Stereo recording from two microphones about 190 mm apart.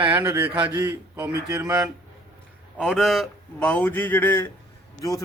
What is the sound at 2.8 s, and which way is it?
Speech, centre (ahead or behind).